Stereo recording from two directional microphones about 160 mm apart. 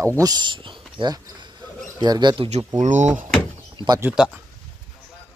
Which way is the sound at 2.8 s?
50° right (ahead or behind).